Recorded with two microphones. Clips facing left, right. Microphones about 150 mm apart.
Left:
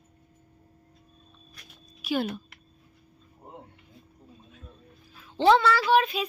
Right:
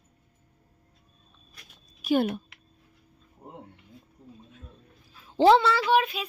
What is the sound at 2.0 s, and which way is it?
Speech, 50° right (ahead or behind).